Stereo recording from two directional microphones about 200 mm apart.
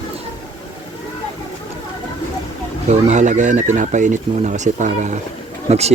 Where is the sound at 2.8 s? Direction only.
35° right (ahead or behind).